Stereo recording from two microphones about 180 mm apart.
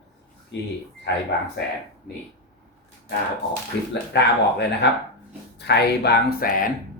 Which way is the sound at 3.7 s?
75° left (ahead or behind).